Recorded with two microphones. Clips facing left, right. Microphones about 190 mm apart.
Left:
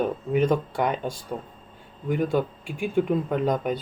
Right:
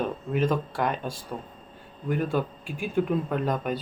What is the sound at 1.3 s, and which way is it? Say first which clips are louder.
Speech: left 3 dB; 5° left (ahead or behind).